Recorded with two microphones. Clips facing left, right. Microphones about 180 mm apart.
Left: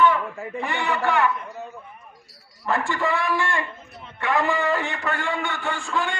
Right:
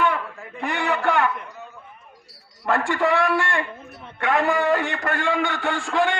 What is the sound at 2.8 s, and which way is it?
Speech, 75° right (ahead or behind).